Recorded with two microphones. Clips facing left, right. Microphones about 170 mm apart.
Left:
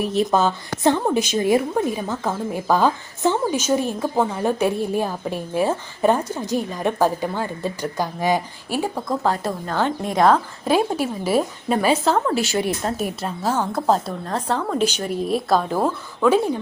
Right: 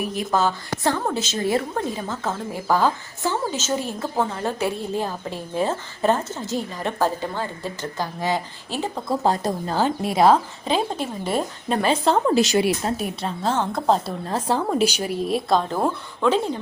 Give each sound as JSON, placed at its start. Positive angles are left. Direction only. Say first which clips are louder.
{"t": 0.1, "sound": "a woman's voice", "louder": "left 3 dB", "side_deg": 20}
{"t": 10.2, "sound": "speech", "louder": "even", "side_deg": -5}
{"t": 10.7, "sound": "a woman's voice", "louder": "left 4 dB", "side_deg": 10}
{"t": 12.3, "sound": "a woman's voice", "louder": "right 3 dB", "side_deg": -20}
{"t": 12.8, "sound": "speech", "louder": "left 1 dB", "side_deg": 0}
{"t": 15.3, "sound": "speech", "louder": "left 2 dB", "side_deg": 5}